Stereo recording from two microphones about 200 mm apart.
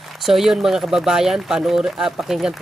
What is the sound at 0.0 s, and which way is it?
Speech, centre (ahead or behind).